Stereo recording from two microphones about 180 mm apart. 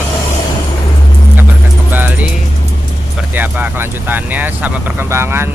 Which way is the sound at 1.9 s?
10° right (ahead or behind).